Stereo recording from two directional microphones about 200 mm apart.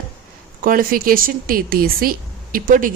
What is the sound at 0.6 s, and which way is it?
A woman's voice, 45° right (ahead or behind).